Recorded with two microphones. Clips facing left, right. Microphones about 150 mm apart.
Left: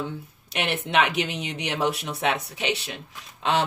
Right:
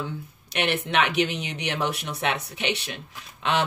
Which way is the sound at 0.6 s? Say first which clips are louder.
Even; 35° left (ahead or behind).